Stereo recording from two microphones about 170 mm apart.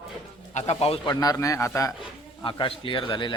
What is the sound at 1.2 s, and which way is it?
Speech, 20° left (ahead or behind).